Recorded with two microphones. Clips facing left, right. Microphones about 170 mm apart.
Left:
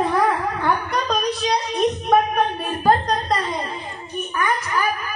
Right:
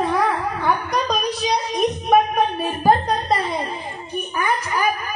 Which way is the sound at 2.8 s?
10° right (ahead or behind).